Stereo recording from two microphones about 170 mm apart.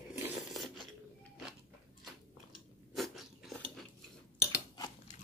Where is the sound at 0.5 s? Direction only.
Centre (ahead or behind).